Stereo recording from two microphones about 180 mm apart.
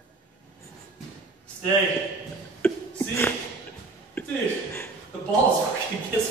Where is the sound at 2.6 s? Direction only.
10° left (ahead or behind).